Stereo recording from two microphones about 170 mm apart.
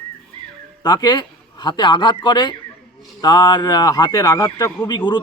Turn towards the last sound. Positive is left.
turn(degrees=25)  # may be behind; listen again after turning